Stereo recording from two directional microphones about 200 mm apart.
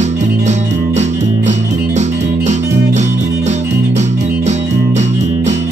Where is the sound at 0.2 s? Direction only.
35° right (ahead or behind).